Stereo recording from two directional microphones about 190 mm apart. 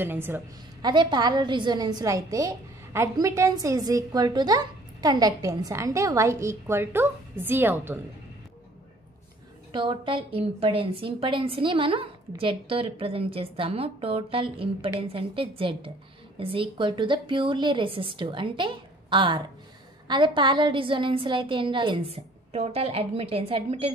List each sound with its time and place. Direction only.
0.0 s a woman's voice: 10° right (ahead or behind)
0.8 s a woman's voice: 25° right (ahead or behind)
9.7 s a woman's voice: 25° right (ahead or behind)